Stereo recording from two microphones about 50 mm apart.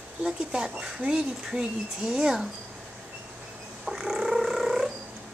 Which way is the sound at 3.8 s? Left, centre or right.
Centre.